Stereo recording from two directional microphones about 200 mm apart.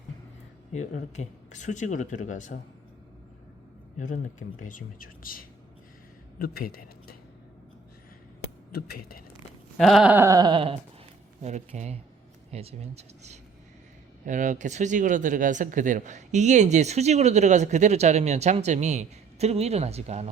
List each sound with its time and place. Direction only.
0.7 s speech: 35° left (ahead or behind)
3.9 s speech: 40° left (ahead or behind)
8.7 s speech: 50° left (ahead or behind)
9.7 s a sound: centre (ahead or behind); by 10.8 s 25° right (ahead or behind)
11.4 s speech: 35° right (ahead or behind)